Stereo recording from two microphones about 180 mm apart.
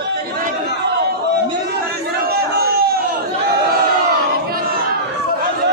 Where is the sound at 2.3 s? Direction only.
60° right (ahead or behind).